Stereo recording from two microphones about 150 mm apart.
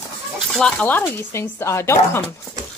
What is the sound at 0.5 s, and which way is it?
Speech, 5° left (ahead or behind).